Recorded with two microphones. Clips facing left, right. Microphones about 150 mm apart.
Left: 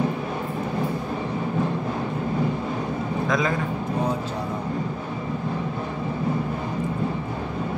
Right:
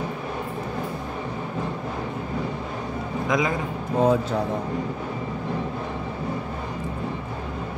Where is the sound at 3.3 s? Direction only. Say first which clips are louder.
Right 1 dB; 15° right (ahead or behind).